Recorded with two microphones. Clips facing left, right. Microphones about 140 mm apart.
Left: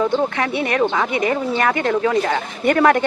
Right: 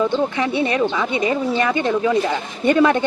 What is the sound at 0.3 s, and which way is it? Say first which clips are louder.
Speech: even; 25° right (ahead or behind).